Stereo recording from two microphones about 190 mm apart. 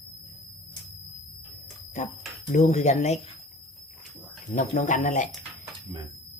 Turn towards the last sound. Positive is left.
turn(degrees=40)  # may be behind; listen again after turning